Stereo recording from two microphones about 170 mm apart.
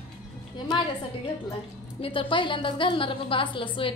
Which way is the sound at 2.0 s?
30° left (ahead or behind).